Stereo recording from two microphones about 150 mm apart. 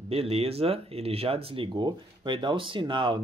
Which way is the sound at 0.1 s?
40° right (ahead or behind).